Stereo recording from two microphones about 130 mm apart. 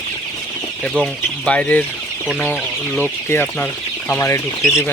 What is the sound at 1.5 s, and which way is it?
Speech, 10° left (ahead or behind).